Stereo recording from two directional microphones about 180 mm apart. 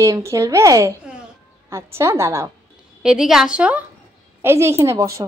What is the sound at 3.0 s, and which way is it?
A woman's voice, 5° right (ahead or behind).